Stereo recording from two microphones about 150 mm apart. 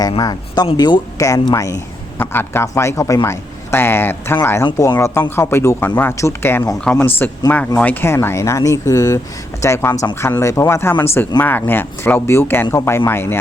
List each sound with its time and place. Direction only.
0.2 s a man's voice: 25° left (ahead or behind)